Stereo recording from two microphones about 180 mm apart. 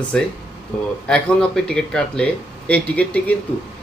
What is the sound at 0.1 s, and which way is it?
Speech, 5° left (ahead or behind).